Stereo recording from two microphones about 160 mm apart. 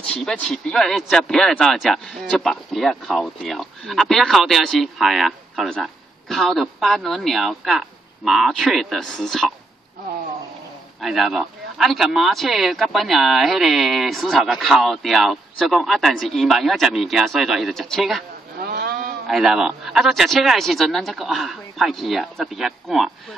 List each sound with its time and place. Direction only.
0.1 s speech: 10° left (ahead or behind)
11.0 s speech: centre (ahead or behind)
18.6 s sheep: 75° right (ahead or behind)
19.2 s speech: centre (ahead or behind)